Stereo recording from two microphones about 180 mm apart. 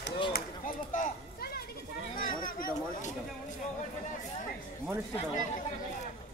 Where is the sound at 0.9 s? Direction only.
55° left (ahead or behind).